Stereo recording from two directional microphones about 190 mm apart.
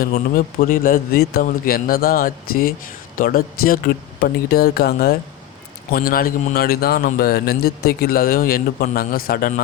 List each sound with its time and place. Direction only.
0.0 s a man's voice: 50° left (ahead or behind)